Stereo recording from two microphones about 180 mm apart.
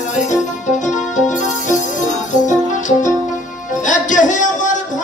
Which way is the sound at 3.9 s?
45° left (ahead or behind).